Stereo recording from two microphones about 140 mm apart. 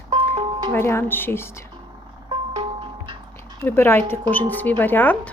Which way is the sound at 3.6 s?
15° left (ahead or behind).